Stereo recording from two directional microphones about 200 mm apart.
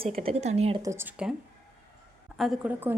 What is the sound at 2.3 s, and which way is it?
Speech, centre (ahead or behind).